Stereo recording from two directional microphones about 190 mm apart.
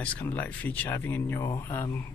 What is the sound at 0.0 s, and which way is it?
Speech, 10° left (ahead or behind).